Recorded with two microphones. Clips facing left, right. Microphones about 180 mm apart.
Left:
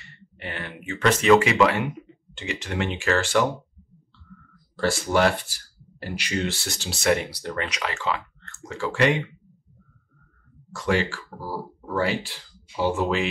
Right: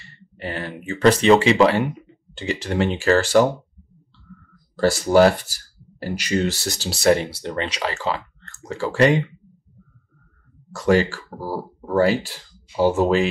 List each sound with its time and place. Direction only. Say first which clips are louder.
0.0 s speech: right 6 dB; 35° right (ahead or behind)
4.7 s speech: right 7 dB; 40° right (ahead or behind)
10.7 s speech: right 6 dB; 40° right (ahead or behind)